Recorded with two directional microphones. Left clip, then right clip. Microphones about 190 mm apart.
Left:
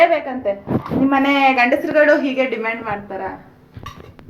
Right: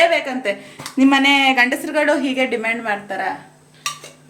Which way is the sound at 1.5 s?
45° right (ahead or behind).